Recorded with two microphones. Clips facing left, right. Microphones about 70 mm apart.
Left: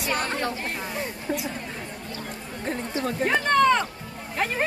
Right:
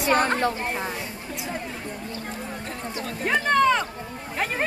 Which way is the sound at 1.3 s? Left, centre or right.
Left.